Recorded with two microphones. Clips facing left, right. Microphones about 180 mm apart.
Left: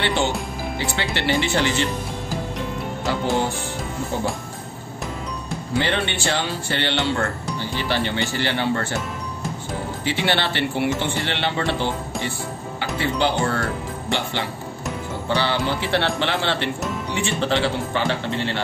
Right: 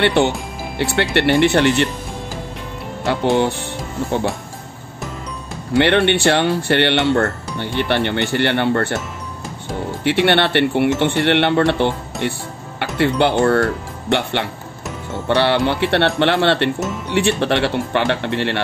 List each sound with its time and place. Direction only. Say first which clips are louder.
0.0 s speech: right 6 dB; 60° right (ahead or behind)
5.8 s speech: right 9 dB; 65° right (ahead or behind)
10.0 s speech: right 8 dB; 65° right (ahead or behind)